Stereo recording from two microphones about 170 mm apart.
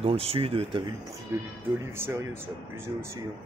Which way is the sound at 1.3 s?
15° right (ahead or behind).